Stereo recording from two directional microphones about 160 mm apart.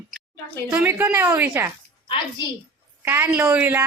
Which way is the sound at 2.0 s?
30° left (ahead or behind).